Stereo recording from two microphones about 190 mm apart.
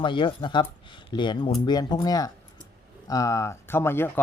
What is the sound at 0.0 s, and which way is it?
Speech, 25° left (ahead or behind).